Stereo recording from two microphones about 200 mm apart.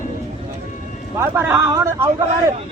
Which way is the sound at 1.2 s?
10° right (ahead or behind).